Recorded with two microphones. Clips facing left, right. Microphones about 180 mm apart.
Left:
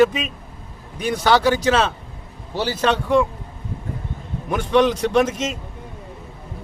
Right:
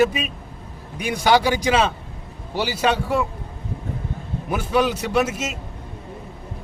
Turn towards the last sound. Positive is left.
turn(degrees=-10)  # may be behind; listen again after turning